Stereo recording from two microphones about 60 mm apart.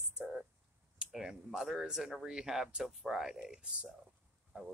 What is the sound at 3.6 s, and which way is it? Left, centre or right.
Speech, right.